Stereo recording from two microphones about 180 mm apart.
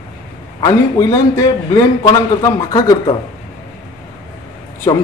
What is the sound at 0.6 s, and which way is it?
Speech, 20° left (ahead or behind).